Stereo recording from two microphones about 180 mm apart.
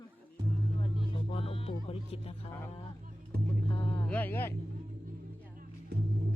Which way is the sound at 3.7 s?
30° left (ahead or behind).